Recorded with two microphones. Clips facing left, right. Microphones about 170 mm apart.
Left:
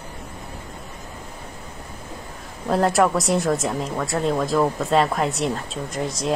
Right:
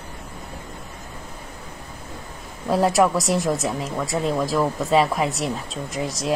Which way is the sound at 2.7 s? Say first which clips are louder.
Even; centre (ahead or behind).